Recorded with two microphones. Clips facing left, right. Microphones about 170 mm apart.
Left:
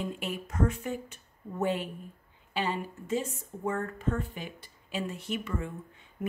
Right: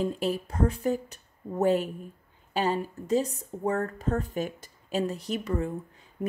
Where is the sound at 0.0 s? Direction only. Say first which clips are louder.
Right 7 dB; 35° right (ahead or behind).